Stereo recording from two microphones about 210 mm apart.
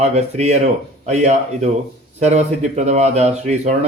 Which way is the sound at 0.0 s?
35° right (ahead or behind).